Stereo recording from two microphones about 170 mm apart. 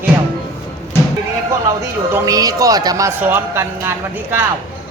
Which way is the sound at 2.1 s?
20° right (ahead or behind).